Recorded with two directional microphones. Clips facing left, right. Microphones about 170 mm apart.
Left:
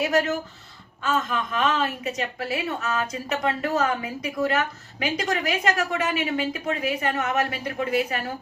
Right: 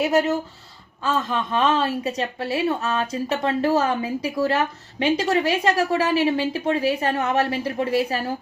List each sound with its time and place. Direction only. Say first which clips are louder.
0.0 s a woman's voice: right 3 dB; 30° right (ahead or behind)